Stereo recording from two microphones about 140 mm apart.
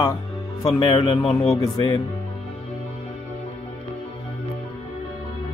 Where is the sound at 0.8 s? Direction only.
40° left (ahead or behind).